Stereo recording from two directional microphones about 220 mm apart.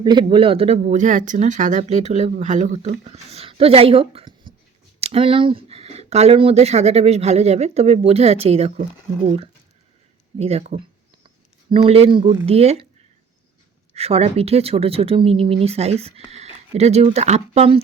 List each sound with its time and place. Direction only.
0.0 s speech: 20° right (ahead or behind)
13.9 s speech: 30° right (ahead or behind)